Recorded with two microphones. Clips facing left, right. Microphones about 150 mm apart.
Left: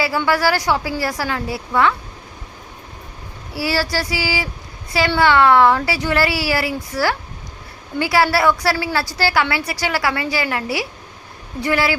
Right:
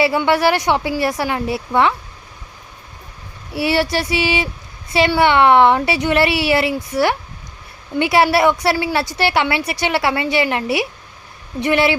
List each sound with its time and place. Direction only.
0.3 s a woman's voice: 25° right (ahead or behind)
3.5 s a woman's voice: 20° right (ahead or behind)